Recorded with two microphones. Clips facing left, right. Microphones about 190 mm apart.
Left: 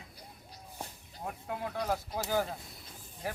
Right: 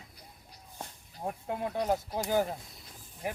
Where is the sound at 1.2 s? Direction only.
25° right (ahead or behind).